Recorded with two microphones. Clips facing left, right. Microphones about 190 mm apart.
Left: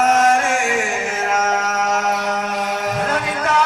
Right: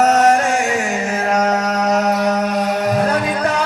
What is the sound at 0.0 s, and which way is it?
Music, 40° right (ahead or behind).